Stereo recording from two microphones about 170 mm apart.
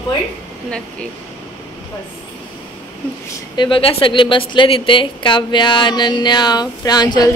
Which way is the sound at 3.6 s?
30° left (ahead or behind).